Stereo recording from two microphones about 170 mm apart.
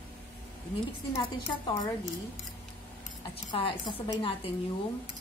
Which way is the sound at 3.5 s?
30° left (ahead or behind).